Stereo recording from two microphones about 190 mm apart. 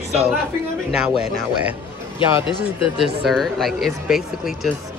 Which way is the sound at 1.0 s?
5° right (ahead or behind).